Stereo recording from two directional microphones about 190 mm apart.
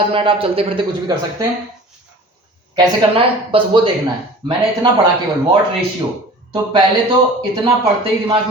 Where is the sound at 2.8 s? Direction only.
25° right (ahead or behind).